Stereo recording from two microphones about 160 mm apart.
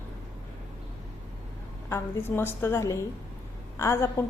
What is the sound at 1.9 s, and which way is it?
A woman's voice, 15° left (ahead or behind).